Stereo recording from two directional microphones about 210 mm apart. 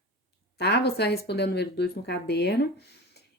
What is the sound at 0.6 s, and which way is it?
A woman's voice, 50° left (ahead or behind).